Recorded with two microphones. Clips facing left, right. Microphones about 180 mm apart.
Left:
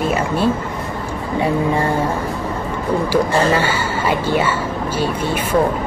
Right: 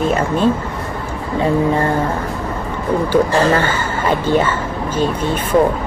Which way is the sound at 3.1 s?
10° left (ahead or behind).